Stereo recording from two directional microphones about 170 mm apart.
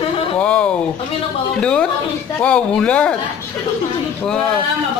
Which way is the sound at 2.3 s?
5° left (ahead or behind).